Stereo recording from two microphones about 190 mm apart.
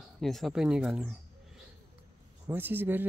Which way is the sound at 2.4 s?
10° right (ahead or behind).